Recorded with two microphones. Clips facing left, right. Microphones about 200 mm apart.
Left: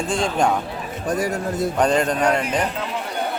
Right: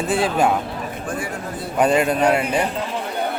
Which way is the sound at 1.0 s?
40° left (ahead or behind).